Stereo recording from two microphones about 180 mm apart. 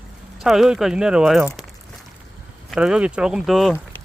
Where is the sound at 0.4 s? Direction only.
Centre (ahead or behind).